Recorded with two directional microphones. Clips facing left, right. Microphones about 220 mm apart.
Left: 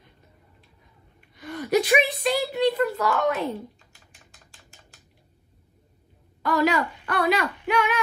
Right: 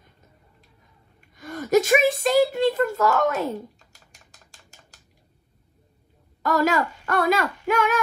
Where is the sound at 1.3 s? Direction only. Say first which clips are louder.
Right 3 dB; 45° right (ahead or behind).